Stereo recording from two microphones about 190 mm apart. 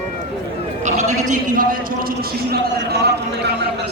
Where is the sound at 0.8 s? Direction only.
40° right (ahead or behind); by 3.9 s 60° right (ahead or behind).